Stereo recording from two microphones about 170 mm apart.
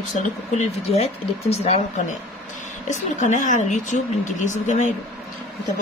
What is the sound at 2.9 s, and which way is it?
Speech, 45° left (ahead or behind).